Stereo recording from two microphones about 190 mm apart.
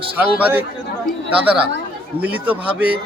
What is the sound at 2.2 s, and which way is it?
Speech, 10° right (ahead or behind).